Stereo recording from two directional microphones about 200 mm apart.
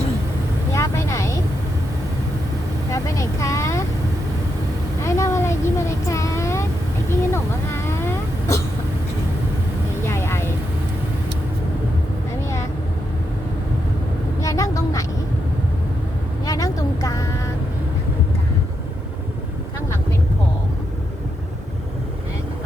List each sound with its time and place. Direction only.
0.7 s vehicle: 15° left (ahead or behind)
2.9 s vehicle: 15° left (ahead or behind)
5.0 s vehicle: 15° left (ahead or behind)
10.1 s vehicle: 10° left (ahead or behind)
14.4 s a sound: 15° left (ahead or behind)
16.5 s vehicle: 15° left (ahead or behind)